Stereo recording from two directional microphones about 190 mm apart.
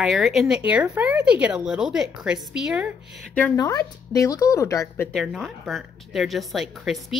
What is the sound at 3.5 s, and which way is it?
Speech, 20° left (ahead or behind).